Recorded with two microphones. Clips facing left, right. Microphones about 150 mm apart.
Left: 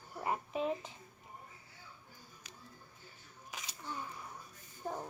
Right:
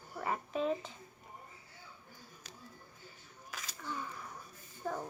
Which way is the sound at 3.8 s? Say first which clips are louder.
Right 2 dB; 20° left (ahead or behind).